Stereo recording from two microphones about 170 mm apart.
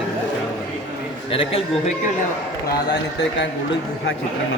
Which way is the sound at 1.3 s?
30° left (ahead or behind).